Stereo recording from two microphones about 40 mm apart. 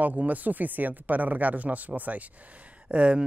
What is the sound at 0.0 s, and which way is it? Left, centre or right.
Speech, right.